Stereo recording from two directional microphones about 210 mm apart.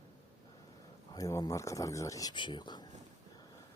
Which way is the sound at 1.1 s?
15° left (ahead or behind).